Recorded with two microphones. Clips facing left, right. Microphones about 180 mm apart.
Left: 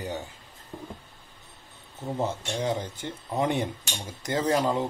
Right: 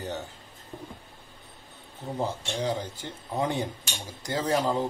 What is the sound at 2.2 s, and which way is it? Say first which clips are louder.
Cutlery: left 1 dB; 20° left (ahead or behind).